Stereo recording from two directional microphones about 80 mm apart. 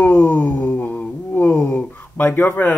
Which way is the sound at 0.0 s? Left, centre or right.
Left.